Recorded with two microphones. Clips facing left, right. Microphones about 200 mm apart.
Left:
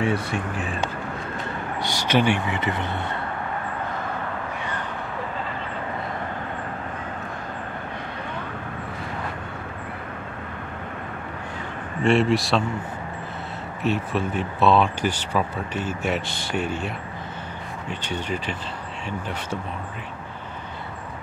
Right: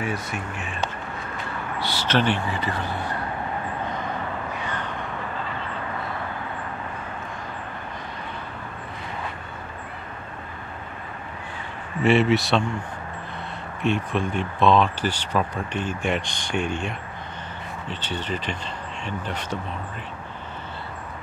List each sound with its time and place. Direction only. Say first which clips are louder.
0.0 s speech: left 5 dB; 30° left (ahead or behind)
1.8 s speech: left 2 dB; 15° left (ahead or behind)
12.0 s speech: right 1 dB; centre (ahead or behind)
13.8 s speech: even; 5° left (ahead or behind)